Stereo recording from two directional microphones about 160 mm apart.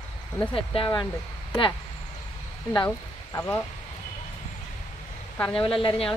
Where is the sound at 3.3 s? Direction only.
15° left (ahead or behind).